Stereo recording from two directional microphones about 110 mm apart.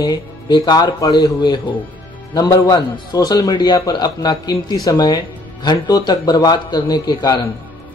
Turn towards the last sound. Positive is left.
turn(degrees=40)  # may be behind; listen again after turning